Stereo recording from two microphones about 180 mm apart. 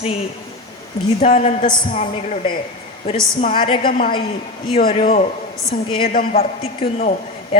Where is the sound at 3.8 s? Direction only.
50° left (ahead or behind).